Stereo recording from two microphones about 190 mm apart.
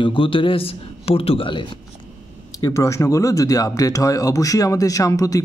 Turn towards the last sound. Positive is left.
turn(degrees=15)  # may be behind; listen again after turning